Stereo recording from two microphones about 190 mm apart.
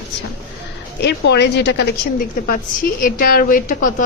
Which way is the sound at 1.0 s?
60° left (ahead or behind).